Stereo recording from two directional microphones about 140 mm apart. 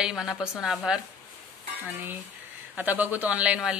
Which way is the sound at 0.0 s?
5° right (ahead or behind).